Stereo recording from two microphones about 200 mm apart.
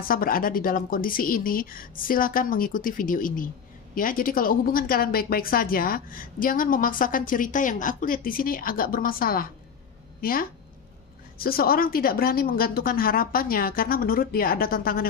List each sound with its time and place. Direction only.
0.0 s speech: 45° left (ahead or behind)
11.3 s speech: 50° left (ahead or behind)